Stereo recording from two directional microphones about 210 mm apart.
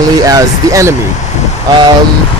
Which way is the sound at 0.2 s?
15° right (ahead or behind).